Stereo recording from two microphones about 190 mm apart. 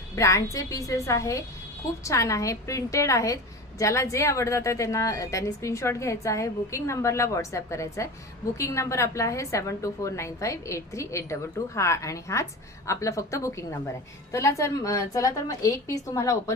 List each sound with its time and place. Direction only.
0.2 s a woman's voice: 15° left (ahead or behind)